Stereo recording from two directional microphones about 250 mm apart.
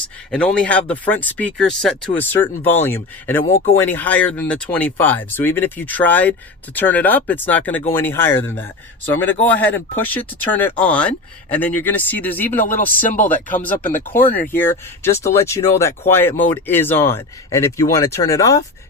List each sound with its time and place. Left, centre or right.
0.3 s speech: centre
12.5 s speech: left
14.1 s speech: centre